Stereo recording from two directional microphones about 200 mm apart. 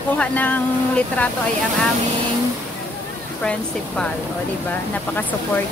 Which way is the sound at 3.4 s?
5° left (ahead or behind).